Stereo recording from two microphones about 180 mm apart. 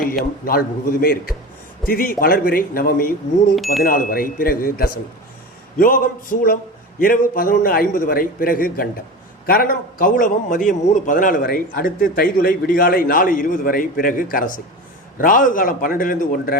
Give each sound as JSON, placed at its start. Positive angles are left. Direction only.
{"t": 0.4, "sound": "a man's voice", "side_deg": 55}